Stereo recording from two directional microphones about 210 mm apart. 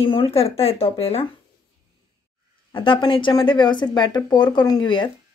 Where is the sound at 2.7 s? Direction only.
25° left (ahead or behind).